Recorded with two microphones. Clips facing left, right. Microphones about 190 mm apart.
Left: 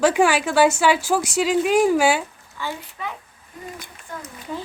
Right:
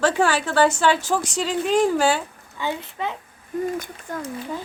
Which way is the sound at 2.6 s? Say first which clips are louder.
Right 4 dB; 20° right (ahead or behind).